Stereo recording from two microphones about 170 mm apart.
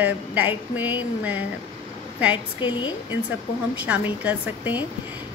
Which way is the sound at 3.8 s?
10° right (ahead or behind).